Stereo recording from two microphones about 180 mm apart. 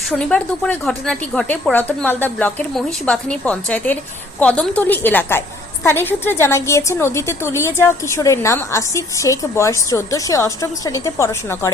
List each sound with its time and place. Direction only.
0.1 s a woman's voice: 5° left (ahead or behind)